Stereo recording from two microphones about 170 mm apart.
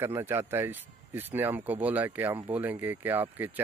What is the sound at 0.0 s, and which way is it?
Speech, 15° right (ahead or behind).